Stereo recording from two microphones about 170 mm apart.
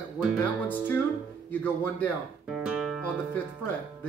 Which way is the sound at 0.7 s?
10° left (ahead or behind).